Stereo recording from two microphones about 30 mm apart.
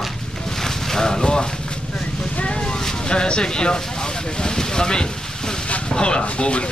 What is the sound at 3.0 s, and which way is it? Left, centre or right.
Speech, left.